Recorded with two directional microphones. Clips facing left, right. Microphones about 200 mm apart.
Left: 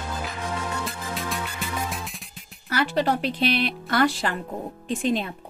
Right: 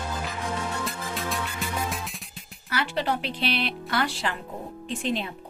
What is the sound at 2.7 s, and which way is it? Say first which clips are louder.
Speech: left 4 dB; 40° left (ahead or behind).